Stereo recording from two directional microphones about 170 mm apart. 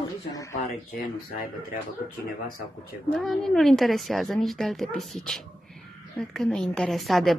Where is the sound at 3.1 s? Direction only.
Centre (ahead or behind).